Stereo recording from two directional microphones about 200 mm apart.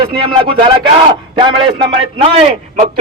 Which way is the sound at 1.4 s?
25° right (ahead or behind).